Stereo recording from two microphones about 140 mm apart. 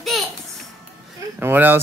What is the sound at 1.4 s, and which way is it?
Speech, 15° right (ahead or behind).